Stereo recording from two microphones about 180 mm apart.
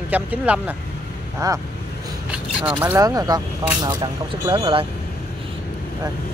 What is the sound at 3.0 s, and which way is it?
Speech, 20° right (ahead or behind).